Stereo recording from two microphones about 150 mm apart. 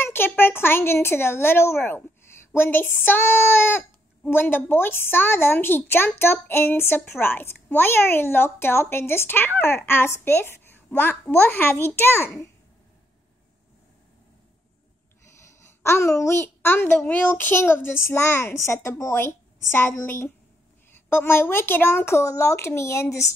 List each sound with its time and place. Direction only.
0.0 s a woman's voice: 15° left (ahead or behind)
15.8 s a woman's voice: 15° left (ahead or behind)